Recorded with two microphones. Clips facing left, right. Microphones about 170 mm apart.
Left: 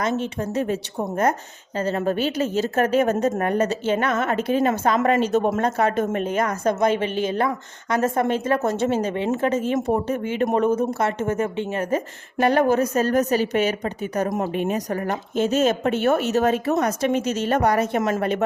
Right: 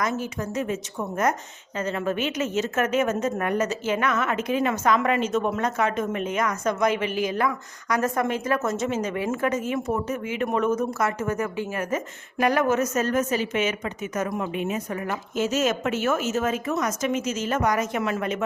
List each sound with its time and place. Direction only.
0.0 s a woman's voice: 30° left (ahead or behind)